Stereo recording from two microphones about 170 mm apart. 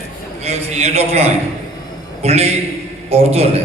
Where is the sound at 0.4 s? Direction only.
40° right (ahead or behind).